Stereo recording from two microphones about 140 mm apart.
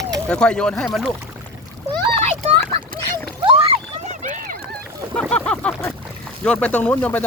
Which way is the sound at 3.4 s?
40° right (ahead or behind).